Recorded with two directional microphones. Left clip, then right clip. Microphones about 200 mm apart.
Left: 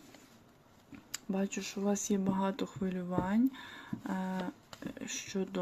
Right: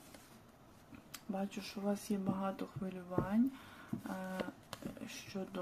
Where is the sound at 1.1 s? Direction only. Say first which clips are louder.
Left 6 dB; 35° left (ahead or behind).